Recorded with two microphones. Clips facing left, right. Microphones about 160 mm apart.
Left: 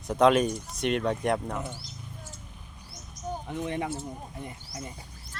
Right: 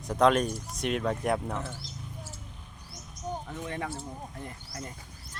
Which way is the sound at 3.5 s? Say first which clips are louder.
Left 4 dB; 20° left (ahead or behind).